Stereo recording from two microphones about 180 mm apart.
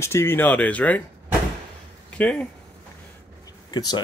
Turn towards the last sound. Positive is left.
turn(degrees=25)  # may be behind; listen again after turning